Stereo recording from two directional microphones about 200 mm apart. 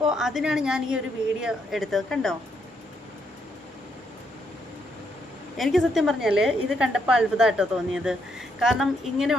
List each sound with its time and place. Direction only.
0.0 s a woman's voice: centre (ahead or behind)
5.5 s a woman's voice: centre (ahead or behind)